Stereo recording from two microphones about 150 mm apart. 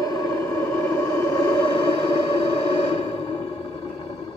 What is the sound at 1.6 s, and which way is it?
Music, 35° left (ahead or behind).